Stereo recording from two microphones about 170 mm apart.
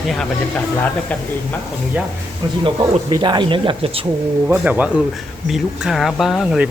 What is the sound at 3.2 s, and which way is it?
Speech, 25° right (ahead or behind).